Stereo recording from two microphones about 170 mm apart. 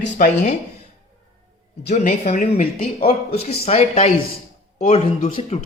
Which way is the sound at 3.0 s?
35° left (ahead or behind).